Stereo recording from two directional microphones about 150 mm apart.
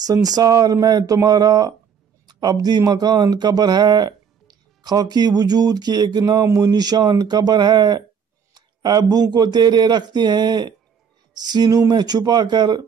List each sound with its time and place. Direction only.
0.0 s speech: 25° right (ahead or behind)